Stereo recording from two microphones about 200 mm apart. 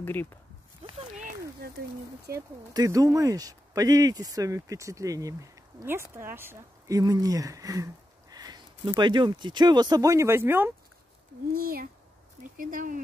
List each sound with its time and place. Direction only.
0.0 s speech: 10° left (ahead or behind)
1.6 s speech: 50° right (ahead or behind)
2.3 s speech: 15° right (ahead or behind)
11.5 s speech: 45° right (ahead or behind)